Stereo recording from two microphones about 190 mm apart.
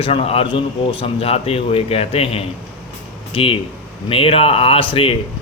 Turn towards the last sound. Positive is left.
turn(degrees=30)  # may be behind; listen again after turning